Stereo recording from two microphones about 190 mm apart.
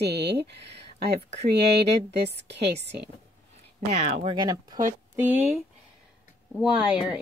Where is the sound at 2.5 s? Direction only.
65° right (ahead or behind).